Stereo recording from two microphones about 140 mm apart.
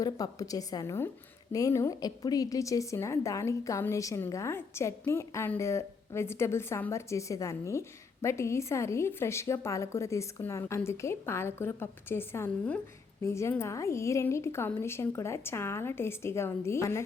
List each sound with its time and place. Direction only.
0.0 s a woman's voice: 25° left (ahead or behind)